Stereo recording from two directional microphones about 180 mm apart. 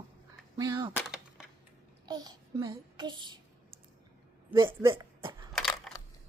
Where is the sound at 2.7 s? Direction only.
25° right (ahead or behind).